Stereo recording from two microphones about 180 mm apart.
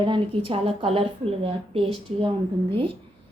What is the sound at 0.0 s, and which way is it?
A woman's voice, 30° right (ahead or behind).